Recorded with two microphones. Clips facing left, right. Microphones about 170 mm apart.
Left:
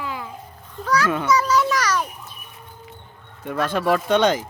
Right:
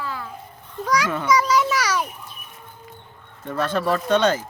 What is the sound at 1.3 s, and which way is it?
Children playing, 10° right (ahead or behind).